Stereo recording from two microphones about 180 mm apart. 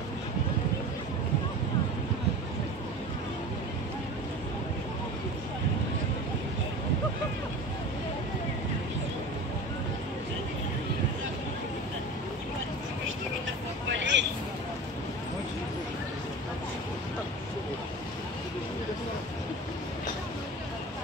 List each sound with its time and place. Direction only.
13.9 s vehicle: 80° right